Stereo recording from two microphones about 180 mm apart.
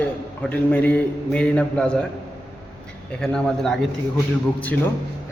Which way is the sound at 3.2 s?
5° left (ahead or behind).